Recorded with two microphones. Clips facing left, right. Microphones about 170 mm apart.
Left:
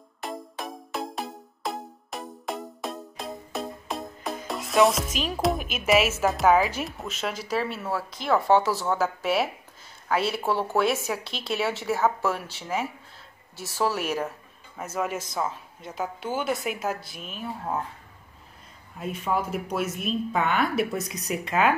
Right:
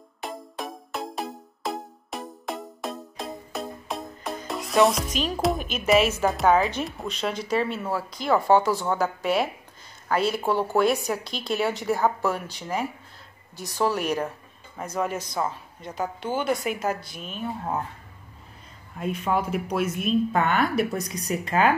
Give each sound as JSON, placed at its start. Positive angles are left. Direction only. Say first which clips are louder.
{"t": 0.2, "sound": "music", "louder": "even", "side_deg": 0}
{"t": 10.0, "sound": "speech", "louder": "right 2 dB", "side_deg": 5}
{"t": 18.9, "sound": "speech", "louder": "right 2 dB", "side_deg": 0}